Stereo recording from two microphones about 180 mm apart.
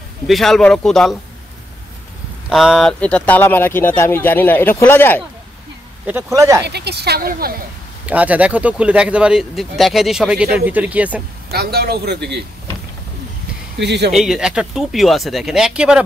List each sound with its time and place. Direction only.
0.3 s speech: centre (ahead or behind)
2.5 s speech: centre (ahead or behind)
6.0 s speech: 10° right (ahead or behind)
6.6 s speech: 65° right (ahead or behind)
8.1 s speech: 10° right (ahead or behind)
11.5 s speech: 60° right (ahead or behind)
13.7 s speech: 70° right (ahead or behind)
14.1 s speech: centre (ahead or behind)